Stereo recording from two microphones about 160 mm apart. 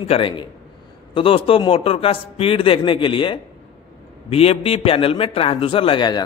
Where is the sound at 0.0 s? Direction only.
35° left (ahead or behind).